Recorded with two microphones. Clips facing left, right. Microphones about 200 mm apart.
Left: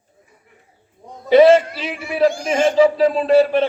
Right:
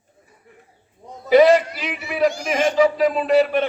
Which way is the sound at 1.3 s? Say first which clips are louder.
Left 3 dB; 25° left (ahead or behind).